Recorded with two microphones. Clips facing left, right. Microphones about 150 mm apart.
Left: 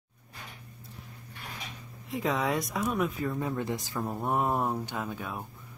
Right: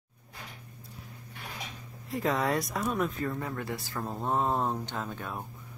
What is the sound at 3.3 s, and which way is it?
Speech, 20° left (ahead or behind).